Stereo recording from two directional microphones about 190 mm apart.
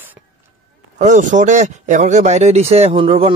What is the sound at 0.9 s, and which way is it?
Speech, 40° right (ahead or behind).